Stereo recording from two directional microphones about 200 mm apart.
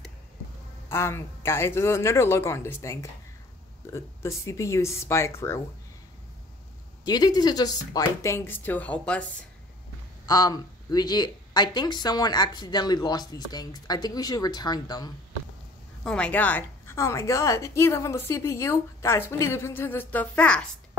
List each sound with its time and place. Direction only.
0.8 s a woman's voice: 10° left (ahead or behind)
7.1 s a woman's voice: 20° left (ahead or behind)
10.2 s speech: 20° left (ahead or behind)
16.0 s a woman's voice: 5° left (ahead or behind)